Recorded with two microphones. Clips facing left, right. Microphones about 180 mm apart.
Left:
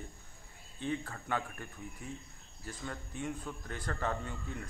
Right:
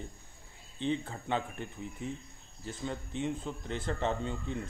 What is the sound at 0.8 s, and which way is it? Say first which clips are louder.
A man's voice: right 4 dB; 20° right (ahead or behind).